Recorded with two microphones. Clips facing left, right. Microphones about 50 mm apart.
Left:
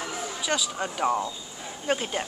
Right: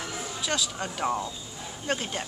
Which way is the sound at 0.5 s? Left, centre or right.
Centre.